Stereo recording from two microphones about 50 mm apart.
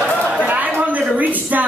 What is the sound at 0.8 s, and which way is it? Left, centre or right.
Speech, right.